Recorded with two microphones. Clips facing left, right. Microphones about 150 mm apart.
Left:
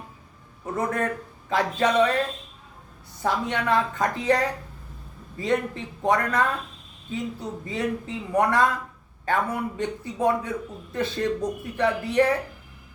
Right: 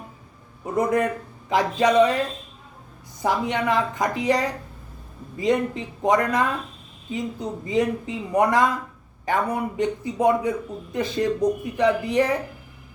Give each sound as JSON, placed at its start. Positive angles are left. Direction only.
{"t": 0.6, "sound": "a man's voice", "side_deg": -15}
{"t": 3.2, "sound": "a man's voice", "side_deg": -15}